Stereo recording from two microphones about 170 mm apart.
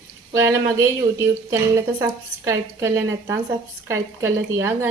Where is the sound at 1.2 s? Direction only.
20° right (ahead or behind).